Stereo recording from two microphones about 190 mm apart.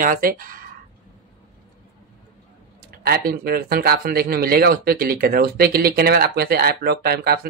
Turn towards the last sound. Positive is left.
turn(degrees=-55)  # may be behind; listen again after turning